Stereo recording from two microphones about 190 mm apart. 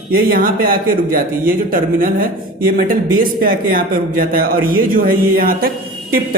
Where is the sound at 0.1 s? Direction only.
50° right (ahead or behind).